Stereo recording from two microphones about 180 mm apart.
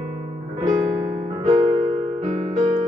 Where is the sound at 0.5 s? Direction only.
20° right (ahead or behind).